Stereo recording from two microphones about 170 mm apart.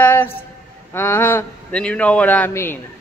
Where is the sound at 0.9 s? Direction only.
15° left (ahead or behind).